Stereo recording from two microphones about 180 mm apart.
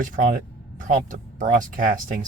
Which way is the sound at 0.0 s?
50° right (ahead or behind).